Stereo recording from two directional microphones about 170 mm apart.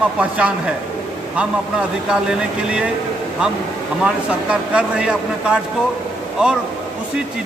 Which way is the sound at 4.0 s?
5° right (ahead or behind).